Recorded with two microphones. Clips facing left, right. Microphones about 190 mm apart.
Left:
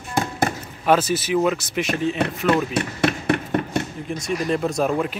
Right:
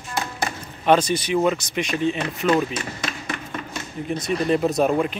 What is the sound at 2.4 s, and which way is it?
Chop, 65° left (ahead or behind).